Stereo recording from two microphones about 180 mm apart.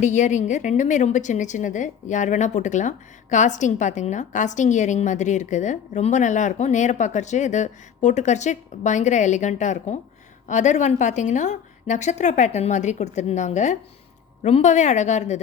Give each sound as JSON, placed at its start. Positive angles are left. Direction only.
{"t": 0.0, "sound": "a woman's voice", "side_deg": 40}